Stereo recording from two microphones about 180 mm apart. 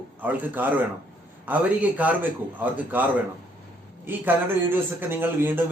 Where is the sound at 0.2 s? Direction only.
10° right (ahead or behind).